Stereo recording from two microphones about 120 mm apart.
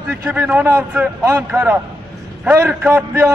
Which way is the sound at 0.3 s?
15° right (ahead or behind).